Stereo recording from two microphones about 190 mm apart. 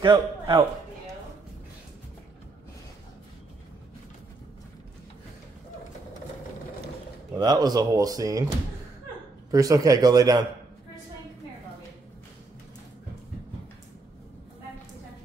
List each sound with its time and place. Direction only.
0.0 s a man's voice: 20° right (ahead or behind)
7.3 s speech: 20° right (ahead or behind)
9.5 s speech: 20° right (ahead or behind)